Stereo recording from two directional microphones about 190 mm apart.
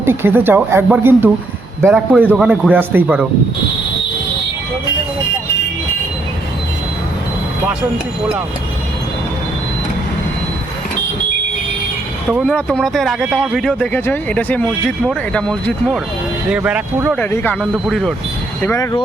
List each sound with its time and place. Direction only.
0.0 s speech: 10° right (ahead or behind)
12.3 s speech: centre (ahead or behind)
16.5 s speech: 5° right (ahead or behind)
17.2 s speech: 10° left (ahead or behind)
18.6 s speech: 15° left (ahead or behind)